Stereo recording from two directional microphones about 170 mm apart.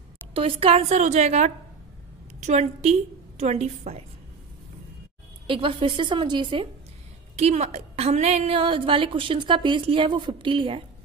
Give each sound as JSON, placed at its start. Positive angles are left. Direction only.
{"t": 0.3, "sound": "a woman's voice", "side_deg": -30}
{"t": 5.5, "sound": "a woman's voice", "side_deg": -30}